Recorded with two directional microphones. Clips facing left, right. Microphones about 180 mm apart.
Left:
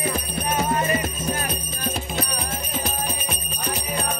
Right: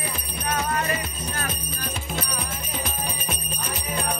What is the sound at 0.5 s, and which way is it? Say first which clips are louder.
Music: left 3 dB; 20° left (ahead or behind).